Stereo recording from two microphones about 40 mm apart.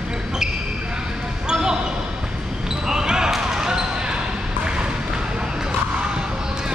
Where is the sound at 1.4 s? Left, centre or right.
Centre.